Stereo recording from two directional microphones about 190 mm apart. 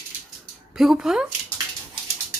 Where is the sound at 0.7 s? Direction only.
Centre (ahead or behind).